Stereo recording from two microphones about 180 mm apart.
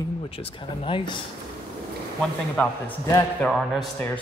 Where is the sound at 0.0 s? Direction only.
30° left (ahead or behind).